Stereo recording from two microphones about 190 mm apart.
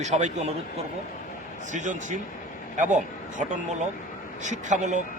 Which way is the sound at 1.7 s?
40° right (ahead or behind).